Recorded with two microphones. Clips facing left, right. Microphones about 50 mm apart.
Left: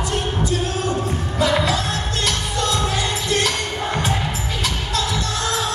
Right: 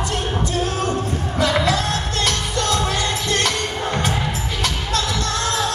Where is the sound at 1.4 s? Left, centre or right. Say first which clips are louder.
Even; right.